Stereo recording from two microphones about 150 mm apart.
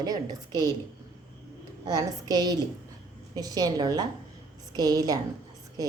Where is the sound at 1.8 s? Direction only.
25° right (ahead or behind).